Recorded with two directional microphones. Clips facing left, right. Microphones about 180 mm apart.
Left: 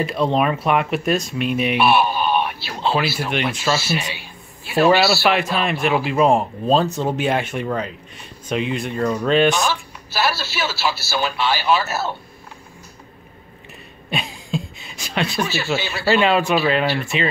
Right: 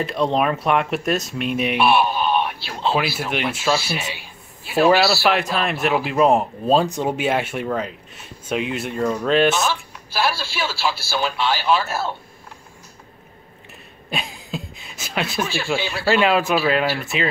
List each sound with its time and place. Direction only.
0.0 s speech: centre (ahead or behind)
14.1 s speech: centre (ahead or behind)